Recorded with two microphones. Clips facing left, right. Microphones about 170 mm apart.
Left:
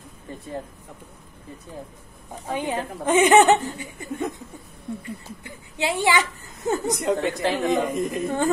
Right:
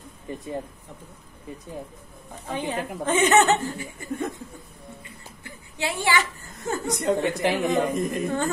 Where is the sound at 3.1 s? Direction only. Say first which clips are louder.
Left 4 dB; 10° left (ahead or behind).